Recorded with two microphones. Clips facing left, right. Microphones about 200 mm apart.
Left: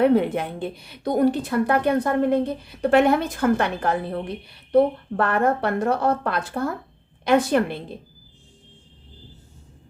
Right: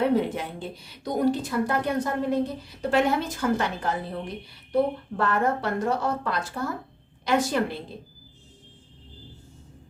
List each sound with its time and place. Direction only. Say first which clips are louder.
0.0 s a woman's voice: left 5 dB; 60° left (ahead or behind)